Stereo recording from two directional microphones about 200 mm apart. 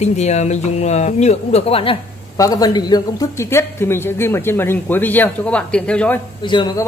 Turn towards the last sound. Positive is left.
turn(degrees=20)  # may be behind; listen again after turning